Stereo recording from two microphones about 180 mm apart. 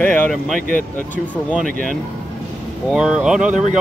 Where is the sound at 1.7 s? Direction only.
50° right (ahead or behind).